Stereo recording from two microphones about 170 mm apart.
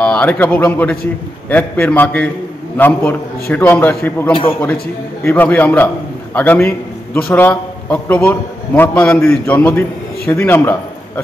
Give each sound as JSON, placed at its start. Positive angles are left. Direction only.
{"t": 0.0, "sound": "a man's voice", "side_deg": 10}
{"t": 4.3, "sound": "a man's voice", "side_deg": 30}
{"t": 5.2, "sound": "a man's voice", "side_deg": 10}